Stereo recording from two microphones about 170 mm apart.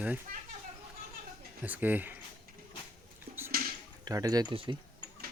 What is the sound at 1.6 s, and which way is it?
Speech, 10° right (ahead or behind).